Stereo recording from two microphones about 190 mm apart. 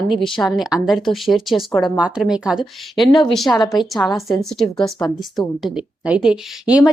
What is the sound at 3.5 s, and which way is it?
Speech, 10° left (ahead or behind).